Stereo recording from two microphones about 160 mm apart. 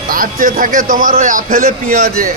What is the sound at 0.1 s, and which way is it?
A man's voice, 60° right (ahead or behind).